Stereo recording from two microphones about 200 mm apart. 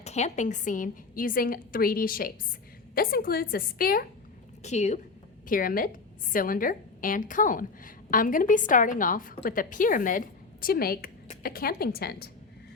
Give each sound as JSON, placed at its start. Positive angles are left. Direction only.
{"t": 0.0, "sound": "a woman's voice", "side_deg": 35}
{"t": 4.6, "sound": "a woman's voice", "side_deg": 35}
{"t": 5.5, "sound": "a woman's voice", "side_deg": 45}